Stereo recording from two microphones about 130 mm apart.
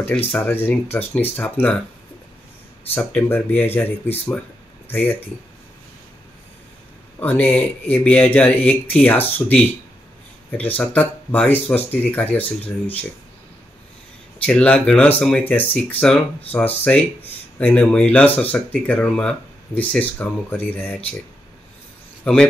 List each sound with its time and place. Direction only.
0.3 s speech: 15° left (ahead or behind)
2.9 s speech: 10° left (ahead or behind)
7.2 s speech: 10° left (ahead or behind)
10.6 s speech: 10° left (ahead or behind)
14.4 s speech: 10° left (ahead or behind)
22.2 s speech: 5° left (ahead or behind)